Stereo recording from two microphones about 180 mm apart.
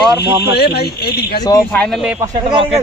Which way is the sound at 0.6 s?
65° left (ahead or behind).